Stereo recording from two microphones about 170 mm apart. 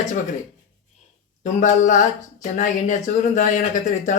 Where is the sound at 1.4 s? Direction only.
45° left (ahead or behind).